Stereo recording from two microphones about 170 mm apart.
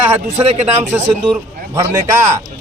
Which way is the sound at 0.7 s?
15° right (ahead or behind).